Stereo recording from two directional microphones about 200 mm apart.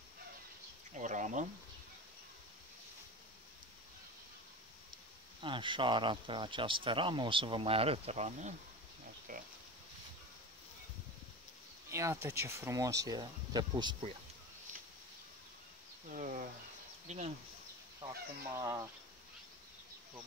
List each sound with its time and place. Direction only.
0.9 s speech: 40° right (ahead or behind)
5.4 s speech: 25° right (ahead or behind); by 9.4 s 40° right (ahead or behind)
11.9 s speech: 15° right (ahead or behind)
16.1 s speech: 40° right (ahead or behind)
18.0 s speech: 15° right (ahead or behind)